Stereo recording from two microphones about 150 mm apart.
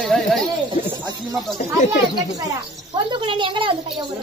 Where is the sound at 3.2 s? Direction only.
35° right (ahead or behind).